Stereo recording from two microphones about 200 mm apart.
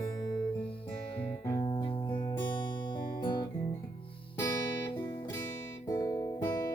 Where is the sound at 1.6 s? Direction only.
25° left (ahead or behind).